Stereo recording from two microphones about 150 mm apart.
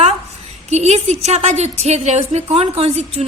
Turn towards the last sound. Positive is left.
turn(degrees=-45)  # may be behind; listen again after turning